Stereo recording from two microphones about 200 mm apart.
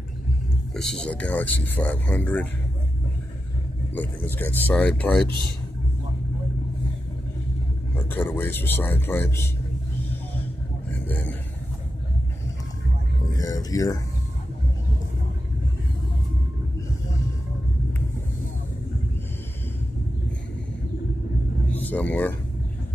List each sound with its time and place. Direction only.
0.7 s speech: centre (ahead or behind)
3.9 s speech: 10° left (ahead or behind)
8.1 s speech: 10° left (ahead or behind)
10.9 s a sound: 10° left (ahead or behind)
13.3 s a sound: 20° left (ahead or behind)
21.7 s speech: 10° left (ahead or behind)